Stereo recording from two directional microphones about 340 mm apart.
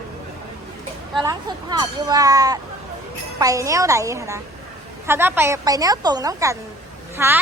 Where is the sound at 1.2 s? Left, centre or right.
Centre.